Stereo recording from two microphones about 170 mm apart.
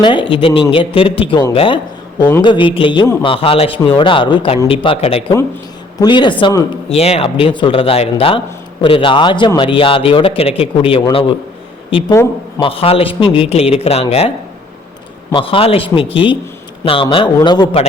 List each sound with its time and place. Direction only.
0.0 s a man's voice: 30° left (ahead or behind)
6.9 s a man's voice: 35° left (ahead or behind)